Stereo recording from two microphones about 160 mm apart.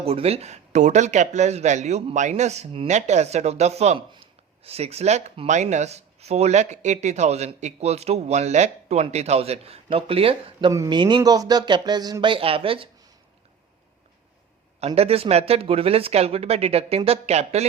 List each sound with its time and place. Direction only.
0.0 s speech: 40° right (ahead or behind)
10.7 s speech: 25° right (ahead or behind)
14.8 s speech: 40° right (ahead or behind)